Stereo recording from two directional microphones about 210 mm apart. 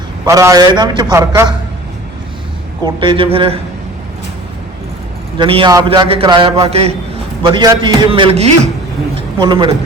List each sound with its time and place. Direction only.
0.3 s a man's voice: 15° right (ahead or behind)
2.8 s a man's voice: 20° right (ahead or behind)
5.4 s a man's voice: 25° right (ahead or behind)